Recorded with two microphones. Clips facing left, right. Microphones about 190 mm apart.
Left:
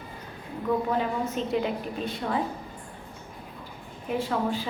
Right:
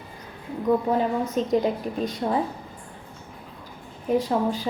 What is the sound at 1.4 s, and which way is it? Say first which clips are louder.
A woman's voice: right 7 dB; 40° right (ahead or behind).